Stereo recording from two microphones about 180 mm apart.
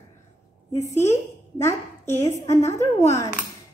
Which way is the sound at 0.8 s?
15° left (ahead or behind).